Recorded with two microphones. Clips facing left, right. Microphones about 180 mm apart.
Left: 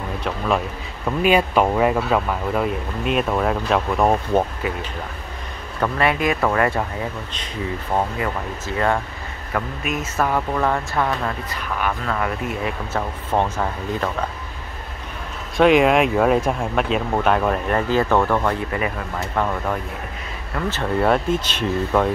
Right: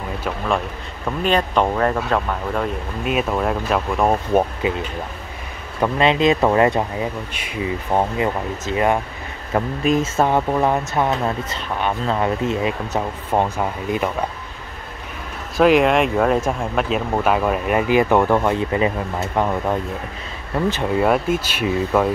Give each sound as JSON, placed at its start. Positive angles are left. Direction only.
{"t": 1.0, "sound": "speech", "side_deg": 5}
{"t": 4.3, "sound": "speech", "side_deg": -15}
{"t": 5.8, "sound": "speech", "side_deg": -20}
{"t": 9.5, "sound": "speech", "side_deg": -30}
{"t": 15.5, "sound": "speech", "side_deg": 0}